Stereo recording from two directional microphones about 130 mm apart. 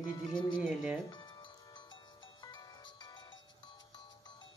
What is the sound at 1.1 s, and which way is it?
Music, 35° left (ahead or behind).